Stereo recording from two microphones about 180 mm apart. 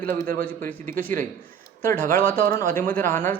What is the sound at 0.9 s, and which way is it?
Speech, 50° right (ahead or behind).